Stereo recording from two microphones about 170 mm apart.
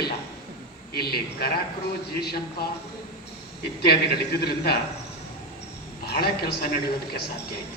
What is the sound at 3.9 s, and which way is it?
Speech, 70° left (ahead or behind).